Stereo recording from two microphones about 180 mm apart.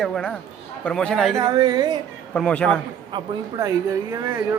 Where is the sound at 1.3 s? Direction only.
20° right (ahead or behind).